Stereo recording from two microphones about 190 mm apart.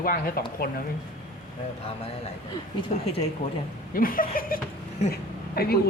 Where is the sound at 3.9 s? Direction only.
50° left (ahead or behind).